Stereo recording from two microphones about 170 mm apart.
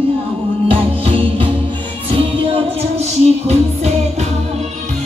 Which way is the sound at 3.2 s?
40° right (ahead or behind).